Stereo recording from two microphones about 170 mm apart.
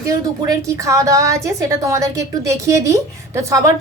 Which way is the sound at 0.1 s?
20° right (ahead or behind).